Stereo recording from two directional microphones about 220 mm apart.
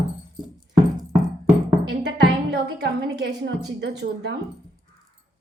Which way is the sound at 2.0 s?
50° right (ahead or behind).